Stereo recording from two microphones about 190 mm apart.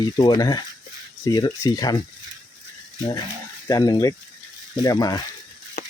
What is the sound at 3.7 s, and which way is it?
Speech, 20° left (ahead or behind).